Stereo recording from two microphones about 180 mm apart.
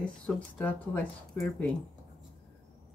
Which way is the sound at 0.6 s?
10° left (ahead or behind).